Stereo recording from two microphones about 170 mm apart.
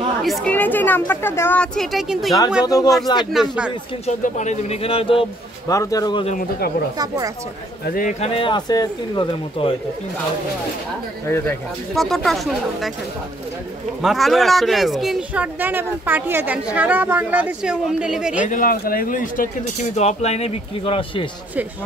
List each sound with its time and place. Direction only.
0.2 s speech: centre (ahead or behind)
2.6 s speech: 20° left (ahead or behind)
3.2 s speech: 5° right (ahead or behind)
4.0 s speech: 45° left (ahead or behind)
5.7 s speech: 20° left (ahead or behind)
7.8 s a man's voice: 55° left (ahead or behind)
8.2 s speech: 30° left (ahead or behind)
11.2 s speech: 15° left (ahead or behind)
11.9 s speech: centre (ahead or behind)
14.0 s speech: centre (ahead or behind)
18.4 s speech: 50° left (ahead or behind)
20.0 s speech: 40° left (ahead or behind)